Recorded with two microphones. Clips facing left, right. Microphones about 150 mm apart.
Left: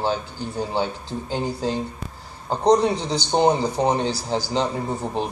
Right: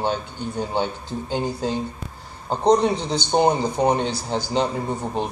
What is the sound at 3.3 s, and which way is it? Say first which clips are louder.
Speech: even; 10° right (ahead or behind).